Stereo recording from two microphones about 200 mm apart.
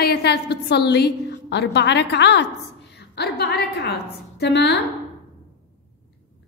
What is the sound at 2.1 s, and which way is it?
A woman's voice, 55° left (ahead or behind).